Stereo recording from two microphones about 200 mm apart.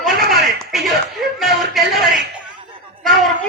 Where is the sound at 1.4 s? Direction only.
Centre (ahead or behind).